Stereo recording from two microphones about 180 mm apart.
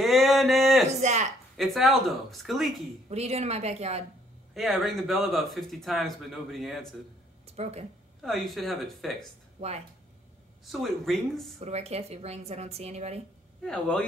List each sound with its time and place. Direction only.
0.0 s a sound: centre (ahead or behind)
1.0 s a woman's voice: 40° right (ahead or behind)
1.6 s speech: centre (ahead or behind)
3.1 s a woman's voice: 35° right (ahead or behind)
4.6 s speech: centre (ahead or behind)
7.4 s a sound: 35° right (ahead or behind)
8.2 s speech: centre (ahead or behind)
10.6 s speech: centre (ahead or behind)
11.6 s a woman's voice: 35° right (ahead or behind)
13.7 s speech: 5° left (ahead or behind)